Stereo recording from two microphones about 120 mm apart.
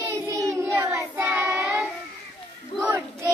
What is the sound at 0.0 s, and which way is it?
Child singing, 25° right (ahead or behind).